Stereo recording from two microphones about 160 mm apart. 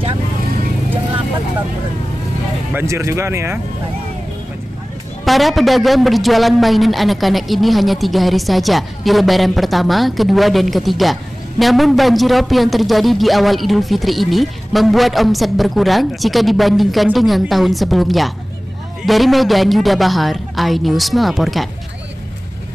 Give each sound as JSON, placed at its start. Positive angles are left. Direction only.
{"t": 2.7, "sound": "speech", "side_deg": -15}
{"t": 5.2, "sound": "a man's voice", "side_deg": 0}